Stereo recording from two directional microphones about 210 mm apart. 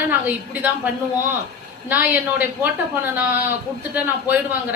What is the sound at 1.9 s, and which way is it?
A woman's voice, 10° right (ahead or behind).